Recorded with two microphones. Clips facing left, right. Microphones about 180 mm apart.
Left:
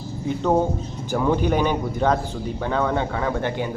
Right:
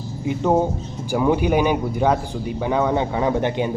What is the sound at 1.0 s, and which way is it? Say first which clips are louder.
A man's voice: right 2 dB; 10° right (ahead or behind).